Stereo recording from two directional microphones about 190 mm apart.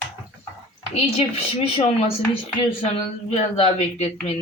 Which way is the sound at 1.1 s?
30° left (ahead or behind).